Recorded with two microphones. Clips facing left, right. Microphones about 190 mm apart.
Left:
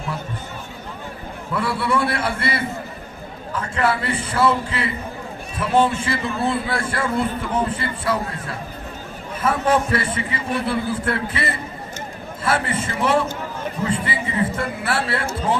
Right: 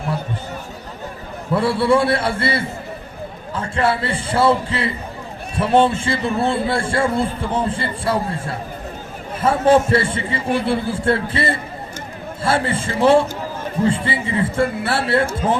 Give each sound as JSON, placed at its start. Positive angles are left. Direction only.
{"t": 1.5, "sound": "a man's voice", "side_deg": -30}